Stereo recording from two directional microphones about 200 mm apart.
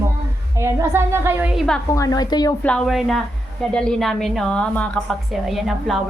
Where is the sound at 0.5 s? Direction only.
15° right (ahead or behind).